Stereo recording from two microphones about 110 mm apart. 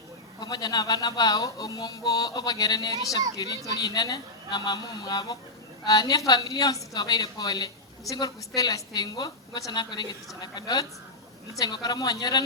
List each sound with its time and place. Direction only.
0.3 s speech: 35° left (ahead or behind)